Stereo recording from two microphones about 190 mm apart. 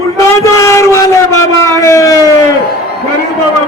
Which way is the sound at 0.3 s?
15° left (ahead or behind).